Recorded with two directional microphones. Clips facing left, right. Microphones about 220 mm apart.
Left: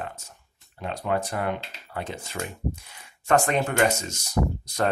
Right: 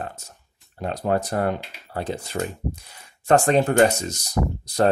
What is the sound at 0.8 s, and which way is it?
Speech, 40° right (ahead or behind).